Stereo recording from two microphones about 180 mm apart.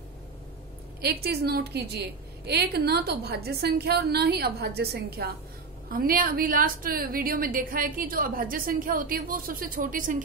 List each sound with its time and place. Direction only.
1.0 s a woman's voice: 60° right (ahead or behind)